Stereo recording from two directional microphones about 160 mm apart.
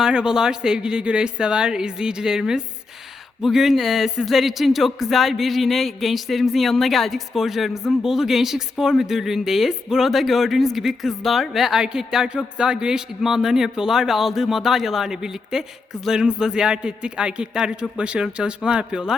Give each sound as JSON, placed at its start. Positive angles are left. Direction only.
{"t": 0.0, "sound": "speech", "side_deg": -5}